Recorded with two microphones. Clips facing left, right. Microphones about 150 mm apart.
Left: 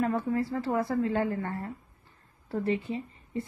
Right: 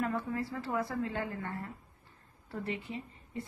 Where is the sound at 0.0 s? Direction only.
35° left (ahead or behind).